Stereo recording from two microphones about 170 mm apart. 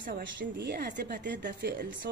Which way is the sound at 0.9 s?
60° right (ahead or behind).